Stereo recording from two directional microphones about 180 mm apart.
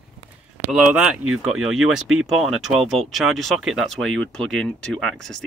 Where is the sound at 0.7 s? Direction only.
5° right (ahead or behind).